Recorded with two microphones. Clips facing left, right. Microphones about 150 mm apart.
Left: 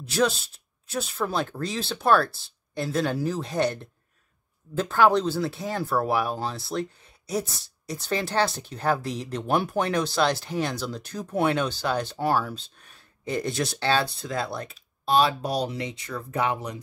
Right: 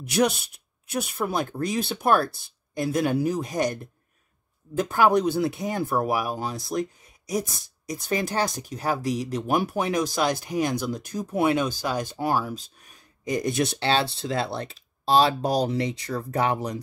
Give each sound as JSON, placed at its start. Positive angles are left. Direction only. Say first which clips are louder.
{"t": 0.0, "sound": "speech", "louder": "right 1 dB", "side_deg": -15}